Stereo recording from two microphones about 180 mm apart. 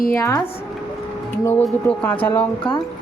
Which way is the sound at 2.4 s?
25° left (ahead or behind).